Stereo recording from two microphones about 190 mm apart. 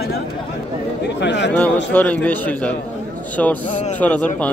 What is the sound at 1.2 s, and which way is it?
Speech, 65° left (ahead or behind).